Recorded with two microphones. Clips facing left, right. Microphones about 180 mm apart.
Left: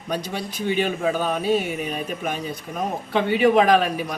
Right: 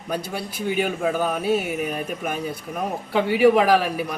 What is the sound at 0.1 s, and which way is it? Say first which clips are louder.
A man's voice: even; 5° right (ahead or behind).